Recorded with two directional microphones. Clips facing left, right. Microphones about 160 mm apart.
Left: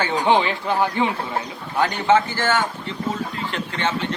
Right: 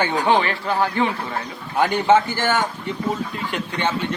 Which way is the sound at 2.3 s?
15° right (ahead or behind).